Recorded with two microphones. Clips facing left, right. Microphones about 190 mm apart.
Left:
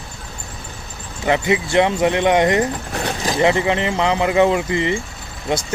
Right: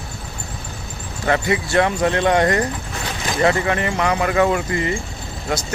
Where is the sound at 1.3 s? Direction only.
20° left (ahead or behind).